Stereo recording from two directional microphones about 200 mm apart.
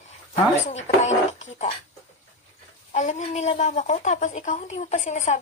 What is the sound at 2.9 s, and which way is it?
A woman's voice, 35° left (ahead or behind).